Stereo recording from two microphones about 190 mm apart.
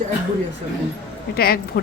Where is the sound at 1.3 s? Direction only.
55° left (ahead or behind).